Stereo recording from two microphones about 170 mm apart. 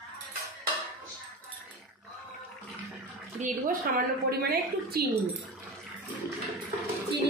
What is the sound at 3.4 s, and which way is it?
A woman's voice, 55° right (ahead or behind).